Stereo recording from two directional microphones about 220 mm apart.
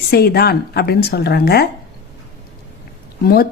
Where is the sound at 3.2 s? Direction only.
45° left (ahead or behind).